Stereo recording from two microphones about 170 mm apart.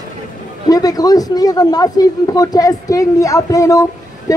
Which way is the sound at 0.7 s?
20° left (ahead or behind).